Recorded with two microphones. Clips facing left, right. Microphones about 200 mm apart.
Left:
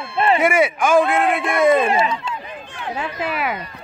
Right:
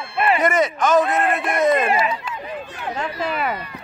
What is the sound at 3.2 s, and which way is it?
Speech, 5° left (ahead or behind).